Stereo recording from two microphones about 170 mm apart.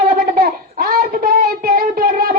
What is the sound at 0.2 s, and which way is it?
Child singing, 65° right (ahead or behind).